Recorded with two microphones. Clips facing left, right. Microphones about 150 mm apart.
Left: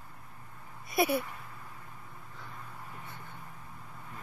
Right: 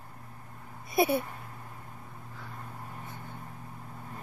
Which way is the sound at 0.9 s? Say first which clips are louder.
Right 2 dB; 25° right (ahead or behind).